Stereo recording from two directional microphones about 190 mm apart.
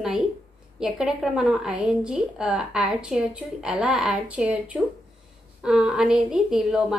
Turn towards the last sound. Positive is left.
turn(degrees=-5)  # may be behind; listen again after turning